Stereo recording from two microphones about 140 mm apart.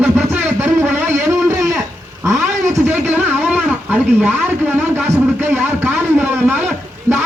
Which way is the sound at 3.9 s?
15° right (ahead or behind).